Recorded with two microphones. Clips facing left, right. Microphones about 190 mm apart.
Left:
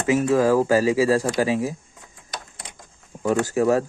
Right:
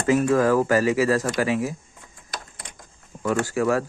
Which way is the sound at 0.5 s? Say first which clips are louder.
Left 1 dB; 10° left (ahead or behind).